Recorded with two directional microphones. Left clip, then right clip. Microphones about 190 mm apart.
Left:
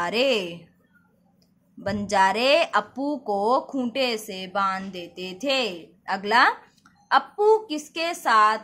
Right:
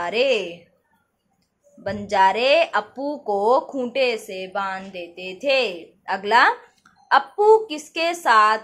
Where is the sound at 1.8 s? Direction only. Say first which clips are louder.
Right 3 dB; 30° left (ahead or behind).